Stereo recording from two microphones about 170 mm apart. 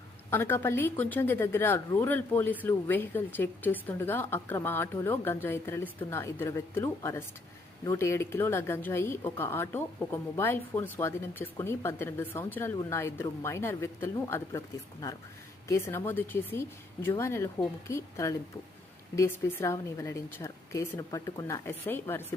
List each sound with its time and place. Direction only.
0.3 s speech: 15° left (ahead or behind)
16.0 s a woman's voice: 10° left (ahead or behind)